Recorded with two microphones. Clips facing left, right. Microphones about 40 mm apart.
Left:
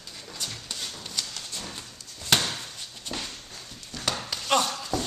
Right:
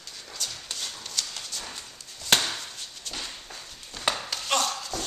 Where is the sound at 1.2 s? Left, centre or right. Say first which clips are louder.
Even; centre.